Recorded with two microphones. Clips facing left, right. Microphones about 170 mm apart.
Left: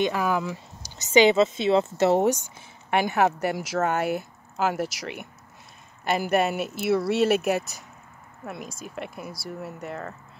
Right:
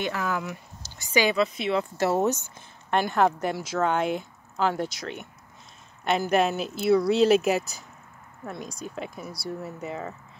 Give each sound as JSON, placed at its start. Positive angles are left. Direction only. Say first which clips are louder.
{"t": 0.0, "sound": "speech", "louder": "left 4 dB", "side_deg": 15}
{"t": 6.0, "sound": "speech", "louder": "even", "side_deg": 5}